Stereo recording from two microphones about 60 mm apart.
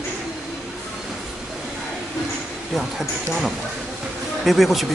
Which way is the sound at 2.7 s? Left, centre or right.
Centre.